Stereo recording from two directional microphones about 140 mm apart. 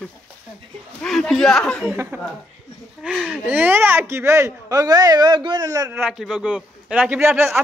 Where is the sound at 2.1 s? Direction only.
15° right (ahead or behind).